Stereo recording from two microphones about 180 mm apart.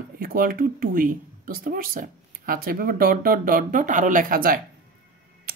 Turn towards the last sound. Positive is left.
turn(degrees=-55)  # may be behind; listen again after turning